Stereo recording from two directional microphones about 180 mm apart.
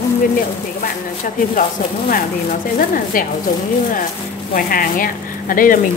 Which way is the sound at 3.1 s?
50° left (ahead or behind).